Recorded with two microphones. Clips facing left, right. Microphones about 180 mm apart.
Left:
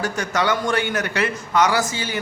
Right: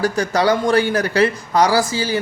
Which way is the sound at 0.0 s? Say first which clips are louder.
Right 5 dB; 35° right (ahead or behind).